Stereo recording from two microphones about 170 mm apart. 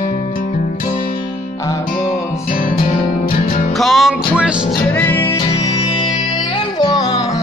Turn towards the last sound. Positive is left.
turn(degrees=20)  # may be behind; listen again after turning